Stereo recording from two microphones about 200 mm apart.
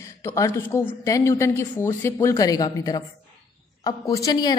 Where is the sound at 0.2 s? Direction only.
15° left (ahead or behind).